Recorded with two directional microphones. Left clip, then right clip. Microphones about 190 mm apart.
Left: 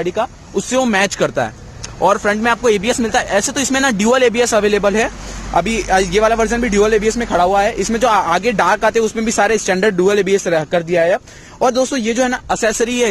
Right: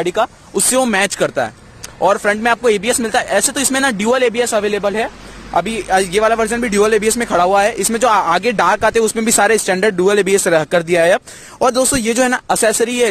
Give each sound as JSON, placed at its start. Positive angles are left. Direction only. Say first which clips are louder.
{"t": 0.0, "sound": "a man's voice", "louder": "right 2 dB", "side_deg": -35}
{"t": 5.5, "sound": "a man's voice", "louder": "left 1 dB", "side_deg": -15}